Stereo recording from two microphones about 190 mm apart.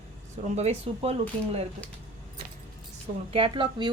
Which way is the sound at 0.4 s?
35° right (ahead or behind).